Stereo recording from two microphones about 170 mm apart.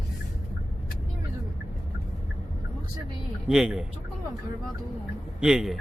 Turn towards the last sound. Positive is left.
turn(degrees=-5)  # may be behind; listen again after turning